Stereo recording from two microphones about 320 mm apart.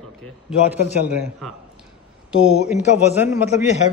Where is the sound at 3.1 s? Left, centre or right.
Centre.